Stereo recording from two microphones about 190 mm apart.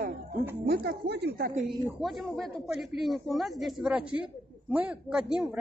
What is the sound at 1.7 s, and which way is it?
Speech, centre (ahead or behind).